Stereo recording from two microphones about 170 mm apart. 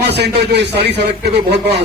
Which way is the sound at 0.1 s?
80° right.